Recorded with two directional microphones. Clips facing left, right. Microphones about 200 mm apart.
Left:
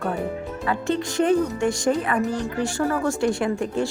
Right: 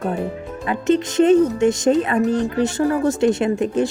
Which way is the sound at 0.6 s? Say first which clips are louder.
Right 6 dB; 20° right (ahead or behind).